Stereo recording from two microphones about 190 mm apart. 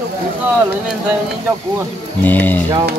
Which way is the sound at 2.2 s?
10° left (ahead or behind).